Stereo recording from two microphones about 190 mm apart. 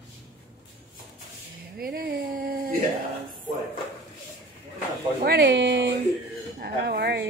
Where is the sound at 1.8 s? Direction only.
50° right (ahead or behind).